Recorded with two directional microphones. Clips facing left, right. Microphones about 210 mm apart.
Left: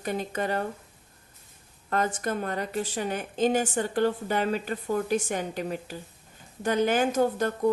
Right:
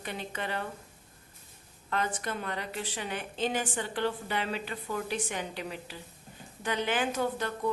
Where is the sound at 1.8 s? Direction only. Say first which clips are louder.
Left 5 dB; 45° left (ahead or behind).